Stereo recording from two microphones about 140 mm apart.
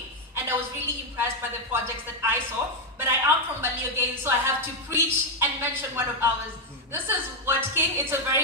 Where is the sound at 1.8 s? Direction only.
20° right (ahead or behind).